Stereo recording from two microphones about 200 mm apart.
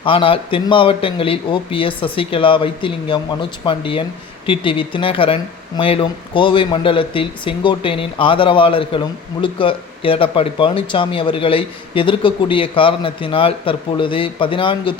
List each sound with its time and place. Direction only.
0.0 s speech: 25° left (ahead or behind)